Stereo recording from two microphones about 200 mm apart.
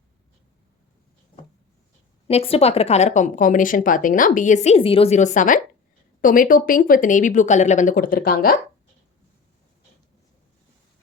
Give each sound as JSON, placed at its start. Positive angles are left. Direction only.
{"t": 2.2, "sound": "speech", "side_deg": 30}